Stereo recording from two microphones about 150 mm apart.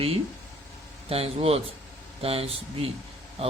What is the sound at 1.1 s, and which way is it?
Speech, 40° right (ahead or behind).